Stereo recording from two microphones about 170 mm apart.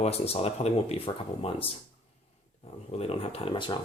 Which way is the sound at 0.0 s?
35° left (ahead or behind).